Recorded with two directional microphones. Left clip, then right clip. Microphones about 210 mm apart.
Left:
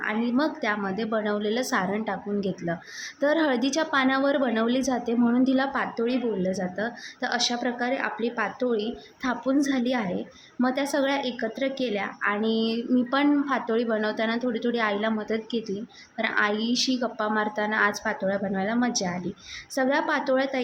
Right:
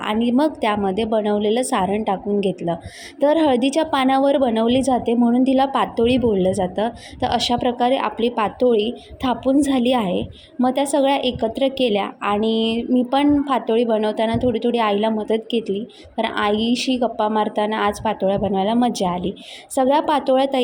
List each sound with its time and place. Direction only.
0.0 s a woman's voice: 25° right (ahead or behind)